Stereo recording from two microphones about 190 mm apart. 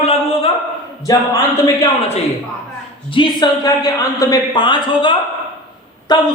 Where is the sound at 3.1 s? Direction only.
25° left (ahead or behind).